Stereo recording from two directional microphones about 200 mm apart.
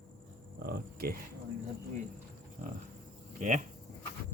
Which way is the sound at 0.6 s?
50° right (ahead or behind).